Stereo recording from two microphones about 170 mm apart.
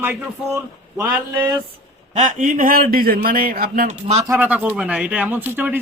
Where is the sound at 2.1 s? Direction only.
45° right (ahead or behind).